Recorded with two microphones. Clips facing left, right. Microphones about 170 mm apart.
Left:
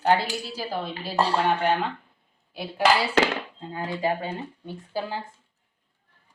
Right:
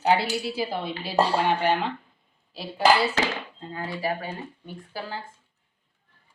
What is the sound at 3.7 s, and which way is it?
Speech, 20° left (ahead or behind).